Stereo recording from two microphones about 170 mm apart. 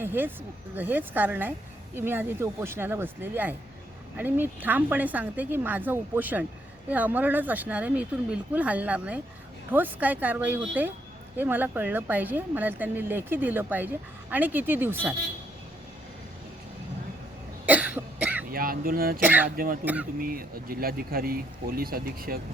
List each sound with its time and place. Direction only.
0.0 s a woman's voice: 10° right (ahead or behind)
17.7 s cough: 10° right (ahead or behind)
18.5 s speech: 60° right (ahead or behind)
19.2 s a woman's voice: 10° right (ahead or behind)
19.5 s speech: 55° right (ahead or behind)
19.8 s a woman's voice: 10° right (ahead or behind)
20.1 s speech: 60° right (ahead or behind)